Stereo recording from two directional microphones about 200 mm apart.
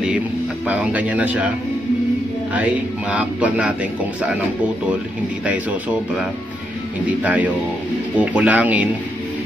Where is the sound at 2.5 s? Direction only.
5° right (ahead or behind).